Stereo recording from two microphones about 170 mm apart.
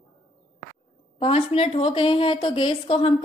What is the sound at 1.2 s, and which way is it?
A woman's voice, 35° left (ahead or behind).